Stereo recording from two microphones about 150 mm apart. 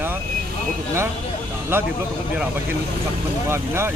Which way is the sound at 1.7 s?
15° right (ahead or behind).